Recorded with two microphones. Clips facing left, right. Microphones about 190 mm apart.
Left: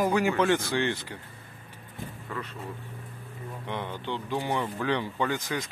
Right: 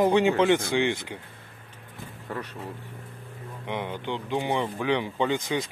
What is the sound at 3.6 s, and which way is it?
Speech, 15° right (ahead or behind).